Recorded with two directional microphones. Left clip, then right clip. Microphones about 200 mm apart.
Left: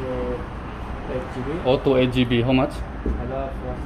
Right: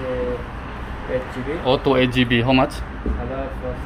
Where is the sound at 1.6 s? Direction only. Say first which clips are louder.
Right 1 dB; 5° left (ahead or behind).